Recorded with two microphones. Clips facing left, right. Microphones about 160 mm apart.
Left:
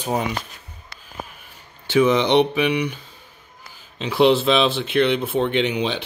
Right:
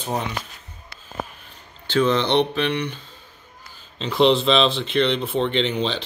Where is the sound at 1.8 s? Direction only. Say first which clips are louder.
Left 3 dB; 10° left (ahead or behind).